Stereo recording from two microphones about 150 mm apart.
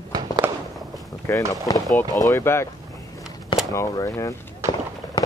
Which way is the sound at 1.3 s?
20° left (ahead or behind).